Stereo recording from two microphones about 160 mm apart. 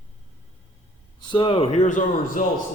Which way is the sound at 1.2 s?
30° left (ahead or behind).